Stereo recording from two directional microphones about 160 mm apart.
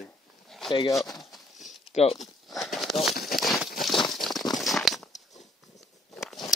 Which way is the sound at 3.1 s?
70° left (ahead or behind).